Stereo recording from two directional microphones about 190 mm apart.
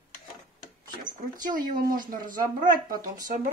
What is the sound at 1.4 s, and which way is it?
Speech, 45° right (ahead or behind).